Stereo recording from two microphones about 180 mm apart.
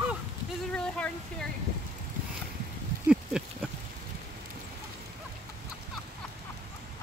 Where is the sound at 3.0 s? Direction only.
5° right (ahead or behind).